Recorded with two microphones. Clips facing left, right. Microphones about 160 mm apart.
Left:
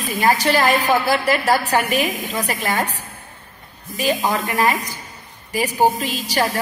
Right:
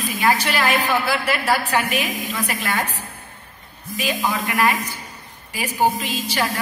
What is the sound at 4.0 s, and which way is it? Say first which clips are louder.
A woman's voice: left 3 dB; 40° left (ahead or behind).